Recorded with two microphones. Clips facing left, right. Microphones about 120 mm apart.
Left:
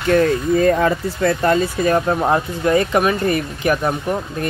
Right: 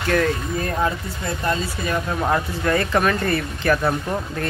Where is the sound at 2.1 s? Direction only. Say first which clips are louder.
Left 4 dB; 25° left (ahead or behind).